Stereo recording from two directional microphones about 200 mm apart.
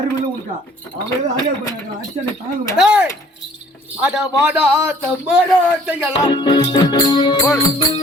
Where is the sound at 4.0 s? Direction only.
5° right (ahead or behind).